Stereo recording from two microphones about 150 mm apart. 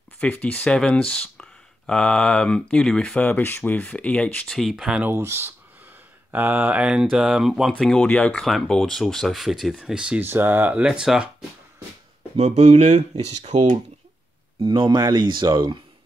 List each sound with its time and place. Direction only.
0.2 s speech: 10° left (ahead or behind)
12.4 s speech: 45° right (ahead or behind)
14.6 s speech: 35° right (ahead or behind)